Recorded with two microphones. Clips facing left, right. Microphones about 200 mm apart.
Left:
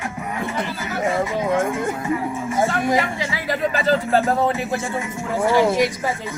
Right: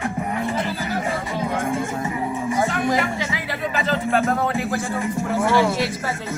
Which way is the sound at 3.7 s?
30° left (ahead or behind).